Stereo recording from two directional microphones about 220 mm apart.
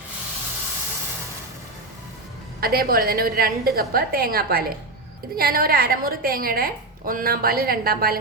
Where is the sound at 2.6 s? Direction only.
45° right (ahead or behind).